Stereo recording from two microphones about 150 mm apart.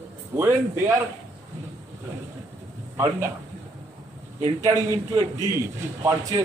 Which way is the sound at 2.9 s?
20° right (ahead or behind).